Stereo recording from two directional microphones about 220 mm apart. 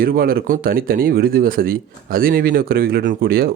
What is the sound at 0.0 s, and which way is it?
Speech, 40° right (ahead or behind).